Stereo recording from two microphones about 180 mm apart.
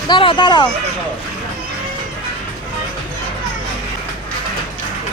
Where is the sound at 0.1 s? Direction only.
25° left (ahead or behind).